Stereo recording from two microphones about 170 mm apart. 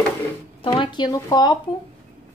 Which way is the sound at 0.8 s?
25° left (ahead or behind).